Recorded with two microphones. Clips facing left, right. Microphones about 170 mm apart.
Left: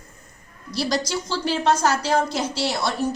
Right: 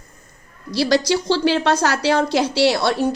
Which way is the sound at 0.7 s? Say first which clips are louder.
Right 7 dB; 75° right (ahead or behind).